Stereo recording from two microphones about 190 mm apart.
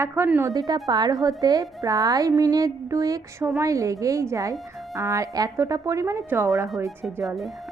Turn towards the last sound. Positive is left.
turn(degrees=0)  # may be behind; listen again after turning